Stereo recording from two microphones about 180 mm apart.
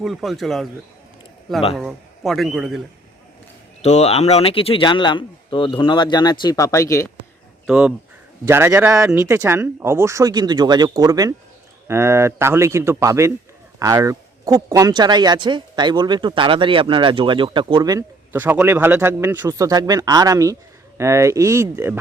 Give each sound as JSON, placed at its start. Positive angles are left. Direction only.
{"t": 0.0, "sound": "a man's voice", "side_deg": 0}
{"t": 1.7, "sound": "a man's voice", "side_deg": -5}
{"t": 3.8, "sound": "speech", "side_deg": 35}
{"t": 7.7, "sound": "a man's voice", "side_deg": -5}